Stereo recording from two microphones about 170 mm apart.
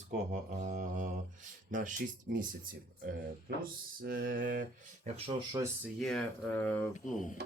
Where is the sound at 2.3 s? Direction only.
70° right (ahead or behind).